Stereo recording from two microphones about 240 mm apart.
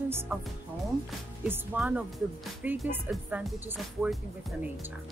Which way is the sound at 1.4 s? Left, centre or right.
Centre.